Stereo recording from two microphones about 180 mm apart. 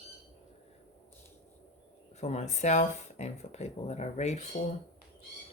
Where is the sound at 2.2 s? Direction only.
40° left (ahead or behind).